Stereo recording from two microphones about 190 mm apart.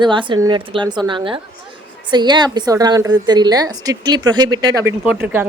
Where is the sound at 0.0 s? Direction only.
25° right (ahead or behind).